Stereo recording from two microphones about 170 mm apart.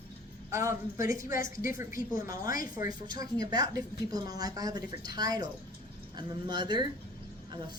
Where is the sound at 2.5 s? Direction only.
55° left (ahead or behind).